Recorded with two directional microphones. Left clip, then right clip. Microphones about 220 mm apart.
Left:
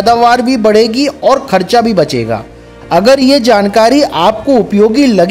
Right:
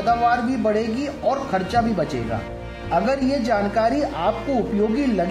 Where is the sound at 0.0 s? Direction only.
40° left (ahead or behind).